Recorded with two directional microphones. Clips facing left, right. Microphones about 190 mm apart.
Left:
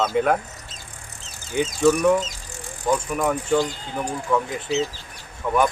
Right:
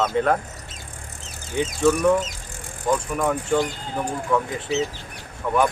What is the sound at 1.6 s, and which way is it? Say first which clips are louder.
Speech: left 1 dB; 5° left (ahead or behind).